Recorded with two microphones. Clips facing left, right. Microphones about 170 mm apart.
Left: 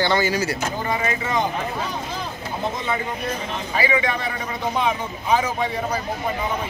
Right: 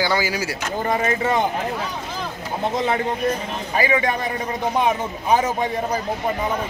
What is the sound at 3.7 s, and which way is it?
A man's voice, 45° right (ahead or behind).